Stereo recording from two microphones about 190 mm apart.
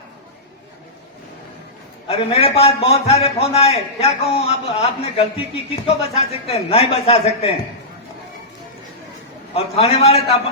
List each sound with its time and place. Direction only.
2.0 s a man's voice: 30° left (ahead or behind)
9.6 s a man's voice: 30° left (ahead or behind)